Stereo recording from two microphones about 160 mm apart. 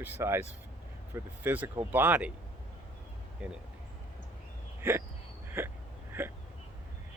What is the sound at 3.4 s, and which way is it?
Speech, 5° right (ahead or behind).